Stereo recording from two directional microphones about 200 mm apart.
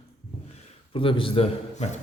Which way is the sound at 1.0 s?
25° left (ahead or behind).